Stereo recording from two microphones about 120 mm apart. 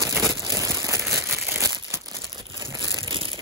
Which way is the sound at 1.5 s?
25° right (ahead or behind).